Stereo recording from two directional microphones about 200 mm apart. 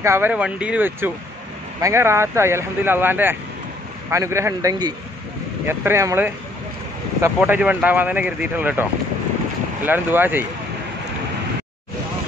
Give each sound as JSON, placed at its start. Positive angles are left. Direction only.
{"t": 0.0, "sound": "speech", "side_deg": -10}
{"t": 7.3, "sound": "speech", "side_deg": -5}
{"t": 9.8, "sound": "speech", "side_deg": -10}